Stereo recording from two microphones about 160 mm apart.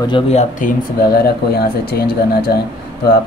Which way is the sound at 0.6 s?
65° left (ahead or behind).